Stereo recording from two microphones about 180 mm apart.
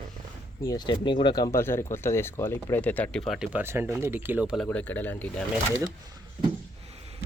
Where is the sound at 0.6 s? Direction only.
20° left (ahead or behind).